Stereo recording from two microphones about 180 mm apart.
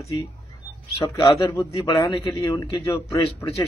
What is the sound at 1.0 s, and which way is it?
Speech, 25° left (ahead or behind).